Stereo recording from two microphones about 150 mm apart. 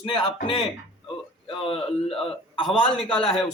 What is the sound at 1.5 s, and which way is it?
Speech, 40° left (ahead or behind).